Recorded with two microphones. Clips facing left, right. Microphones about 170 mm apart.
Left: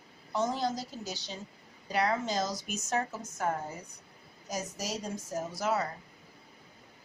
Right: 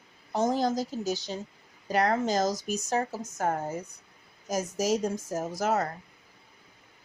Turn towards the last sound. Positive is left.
turn(degrees=-45)  # may be behind; listen again after turning